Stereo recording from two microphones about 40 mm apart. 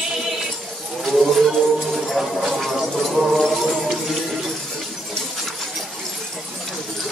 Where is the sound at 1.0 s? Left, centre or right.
Centre.